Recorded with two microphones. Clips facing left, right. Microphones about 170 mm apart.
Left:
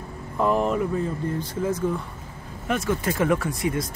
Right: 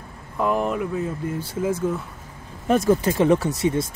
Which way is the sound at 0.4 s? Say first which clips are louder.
Left 1 dB; centre (ahead or behind).